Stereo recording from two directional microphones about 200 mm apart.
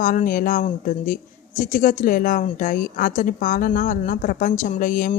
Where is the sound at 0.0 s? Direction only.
40° left (ahead or behind).